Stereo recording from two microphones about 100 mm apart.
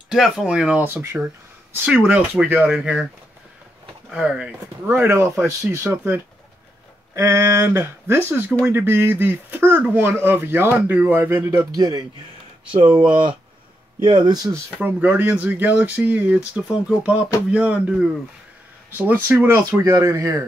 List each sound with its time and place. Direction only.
0.1 s speech: 5° right (ahead or behind)
4.1 s speech: 10° right (ahead or behind)
7.2 s speech: 30° right (ahead or behind)
11.7 s speech: 40° right (ahead or behind)
12.7 s speech: 55° right (ahead or behind)
14.8 s speech: 20° right (ahead or behind)
19.8 s speech: 30° right (ahead or behind)